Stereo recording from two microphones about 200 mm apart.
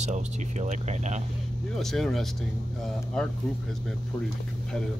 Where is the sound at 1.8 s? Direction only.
Centre (ahead or behind).